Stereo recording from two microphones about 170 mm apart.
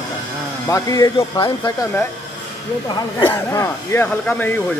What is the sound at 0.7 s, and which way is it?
Speech, 20° left (ahead or behind).